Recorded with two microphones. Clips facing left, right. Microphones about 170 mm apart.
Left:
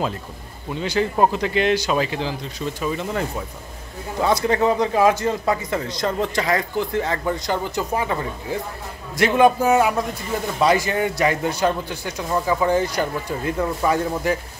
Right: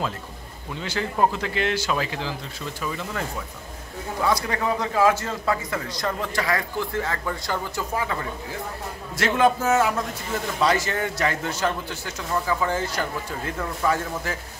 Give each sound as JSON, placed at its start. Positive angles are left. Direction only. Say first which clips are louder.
{"t": 0.7, "sound": "a man's voice", "louder": "left 5 dB", "side_deg": 20}